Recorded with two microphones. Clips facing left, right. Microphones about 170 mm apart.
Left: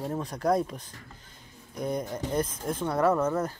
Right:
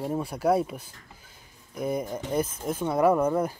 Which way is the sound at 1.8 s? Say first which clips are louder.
Right 2 dB; 5° right (ahead or behind).